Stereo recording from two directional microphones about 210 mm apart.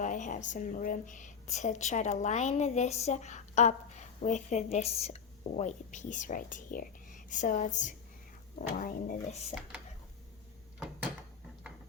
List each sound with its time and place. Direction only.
0.0 s speech: 35° left (ahead or behind)